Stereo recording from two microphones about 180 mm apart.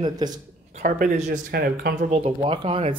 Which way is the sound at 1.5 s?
55° right (ahead or behind).